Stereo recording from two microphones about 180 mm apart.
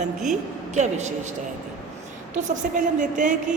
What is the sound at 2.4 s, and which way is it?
Speech, 45° right (ahead or behind).